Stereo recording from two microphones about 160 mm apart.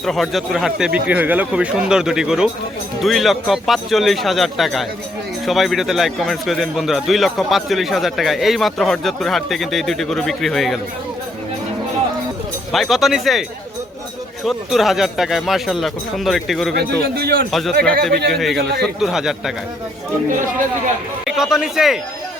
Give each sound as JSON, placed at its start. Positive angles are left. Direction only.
{"t": 0.0, "sound": "a man's voice", "side_deg": 0}
{"t": 12.7, "sound": "a man's voice", "side_deg": 0}
{"t": 14.4, "sound": "a man's voice", "side_deg": 0}
{"t": 16.7, "sound": "a man's voice", "side_deg": -80}
{"t": 17.5, "sound": "a man's voice", "side_deg": 0}
{"t": 20.3, "sound": "speech", "side_deg": -55}
{"t": 21.2, "sound": "a man's voice", "side_deg": -5}